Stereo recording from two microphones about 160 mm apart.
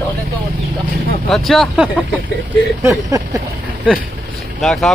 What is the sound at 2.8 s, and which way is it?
Speech, 20° right (ahead or behind).